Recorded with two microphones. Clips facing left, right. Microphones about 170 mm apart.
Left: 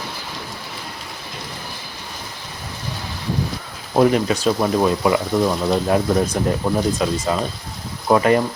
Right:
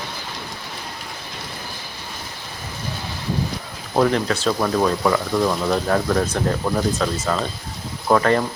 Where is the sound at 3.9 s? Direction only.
15° left (ahead or behind).